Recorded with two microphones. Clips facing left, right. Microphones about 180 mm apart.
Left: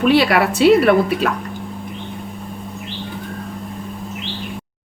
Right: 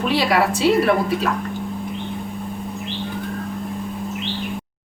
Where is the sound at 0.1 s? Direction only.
65° left (ahead or behind).